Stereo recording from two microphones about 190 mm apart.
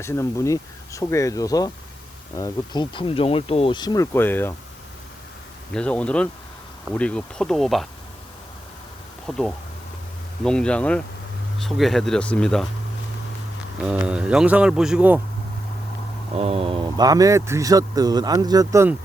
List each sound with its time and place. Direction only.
0.0 s speech: 15° left (ahead or behind)
5.7 s speech: 5° left (ahead or behind)
9.3 s speech: 10° left (ahead or behind)
13.8 s speech: 5° right (ahead or behind)
16.3 s speech: 30° right (ahead or behind); by 18.9 s 15° right (ahead or behind)